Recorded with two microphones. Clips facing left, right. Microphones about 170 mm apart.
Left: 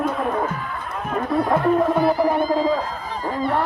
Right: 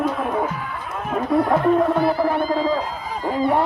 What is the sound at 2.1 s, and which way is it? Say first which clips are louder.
Speech: left 1 dB; 15° left (ahead or behind).